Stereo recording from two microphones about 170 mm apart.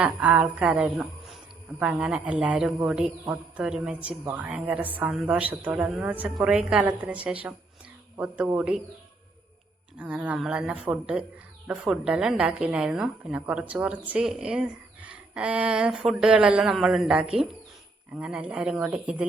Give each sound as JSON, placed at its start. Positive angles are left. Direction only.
{"t": 0.0, "sound": "speech", "side_deg": -5}
{"t": 10.0, "sound": "a woman's voice", "side_deg": -5}